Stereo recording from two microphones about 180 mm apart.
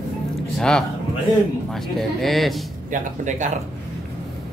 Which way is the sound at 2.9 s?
45° right (ahead or behind).